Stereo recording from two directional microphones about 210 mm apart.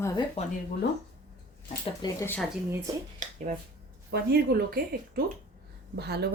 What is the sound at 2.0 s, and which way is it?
Speech, 15° left (ahead or behind).